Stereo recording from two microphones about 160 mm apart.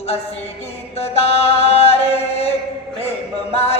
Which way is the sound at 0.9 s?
40° left (ahead or behind).